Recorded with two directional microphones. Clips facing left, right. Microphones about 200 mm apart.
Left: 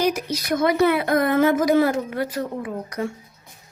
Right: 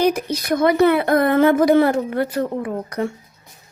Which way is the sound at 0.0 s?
60° right (ahead or behind).